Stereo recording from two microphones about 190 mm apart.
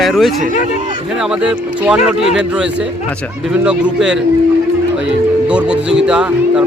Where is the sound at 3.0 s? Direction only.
5° left (ahead or behind).